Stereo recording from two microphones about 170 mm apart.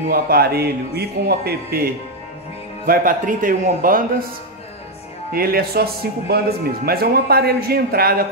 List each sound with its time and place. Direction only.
0.1 s a man's voice: 65° right (ahead or behind)
2.9 s a man's voice: 55° right (ahead or behind)
5.3 s a man's voice: 60° right (ahead or behind)